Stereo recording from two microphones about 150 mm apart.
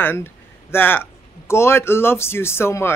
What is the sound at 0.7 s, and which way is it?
Speech, 15° left (ahead or behind).